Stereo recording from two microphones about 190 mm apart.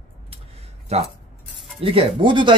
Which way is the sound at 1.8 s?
30° right (ahead or behind).